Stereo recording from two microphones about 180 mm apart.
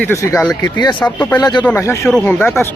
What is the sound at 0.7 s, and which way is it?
Speech, 25° left (ahead or behind).